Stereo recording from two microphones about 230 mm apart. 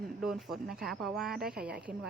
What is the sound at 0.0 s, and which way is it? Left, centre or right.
Speech, centre.